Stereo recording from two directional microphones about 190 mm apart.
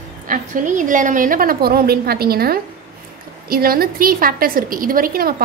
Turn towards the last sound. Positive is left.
turn(degrees=-50)  # may be behind; listen again after turning